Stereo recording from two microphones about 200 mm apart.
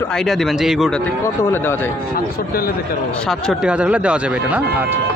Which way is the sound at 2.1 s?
45° left (ahead or behind).